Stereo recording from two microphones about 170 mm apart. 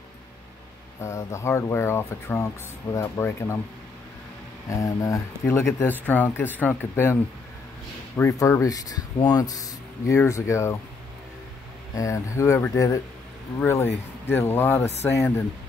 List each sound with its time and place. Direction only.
1.0 s speech: 15° left (ahead or behind)
4.6 s speech: 20° left (ahead or behind)
8.2 s speech: 15° left (ahead or behind)
11.9 s speech: 20° left (ahead or behind)